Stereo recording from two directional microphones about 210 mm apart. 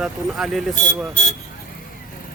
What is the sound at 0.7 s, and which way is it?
Speech, 40° left (ahead or behind).